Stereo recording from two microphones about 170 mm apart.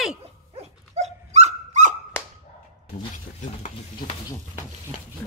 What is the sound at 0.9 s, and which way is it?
Dog, 40° right (ahead or behind).